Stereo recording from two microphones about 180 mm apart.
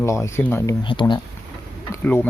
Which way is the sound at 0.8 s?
25° left (ahead or behind).